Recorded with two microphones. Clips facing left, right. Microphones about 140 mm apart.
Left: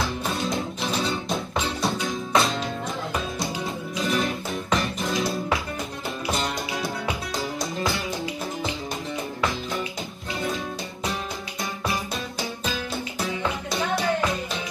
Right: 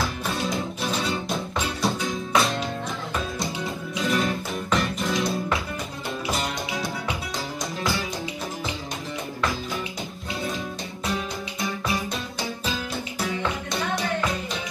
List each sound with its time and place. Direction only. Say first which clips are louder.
0.3 s music: even; centre (ahead or behind)
3.9 s music: right 1 dB; centre (ahead or behind)